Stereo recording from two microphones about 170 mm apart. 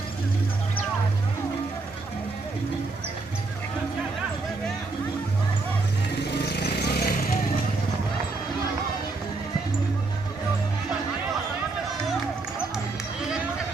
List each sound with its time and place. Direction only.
6.3 s vehicle: 70° left (ahead or behind)